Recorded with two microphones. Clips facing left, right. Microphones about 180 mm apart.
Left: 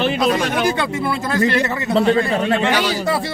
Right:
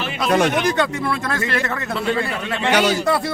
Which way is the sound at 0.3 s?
55° right (ahead or behind).